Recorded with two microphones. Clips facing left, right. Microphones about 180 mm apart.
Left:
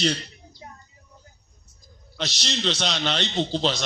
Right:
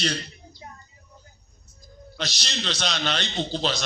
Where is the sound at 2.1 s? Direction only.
25° left (ahead or behind).